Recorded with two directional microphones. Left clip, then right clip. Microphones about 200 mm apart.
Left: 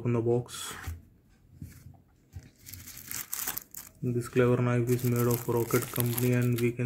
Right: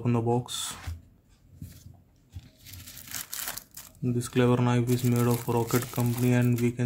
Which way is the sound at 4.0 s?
35° right (ahead or behind).